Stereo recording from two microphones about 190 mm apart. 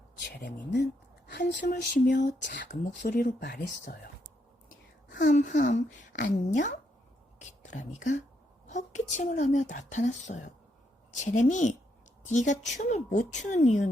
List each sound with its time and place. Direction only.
0.2 s speech: 60° left (ahead or behind)
2.0 s speech: 40° left (ahead or behind)
5.3 s speech: 40° left (ahead or behind)